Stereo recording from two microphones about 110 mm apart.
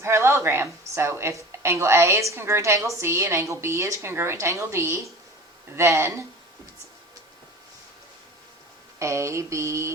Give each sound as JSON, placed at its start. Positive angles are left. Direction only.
{"t": 0.0, "sound": "a woman's voice", "side_deg": -25}
{"t": 9.0, "sound": "a woman's voice", "side_deg": -25}